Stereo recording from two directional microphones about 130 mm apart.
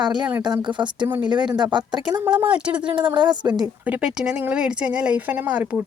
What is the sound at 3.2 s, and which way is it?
Speech, 35° right (ahead or behind).